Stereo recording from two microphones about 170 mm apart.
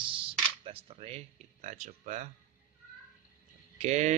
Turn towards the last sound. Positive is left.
turn(degrees=-40)  # may be behind; listen again after turning